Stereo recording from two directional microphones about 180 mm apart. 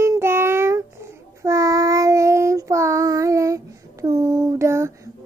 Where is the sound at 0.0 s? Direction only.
15° right (ahead or behind).